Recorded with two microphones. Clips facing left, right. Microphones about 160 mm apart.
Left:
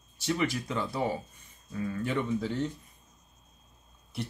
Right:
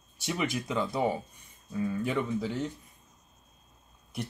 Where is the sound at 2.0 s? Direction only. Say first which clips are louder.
Left 3 dB; 10° right (ahead or behind).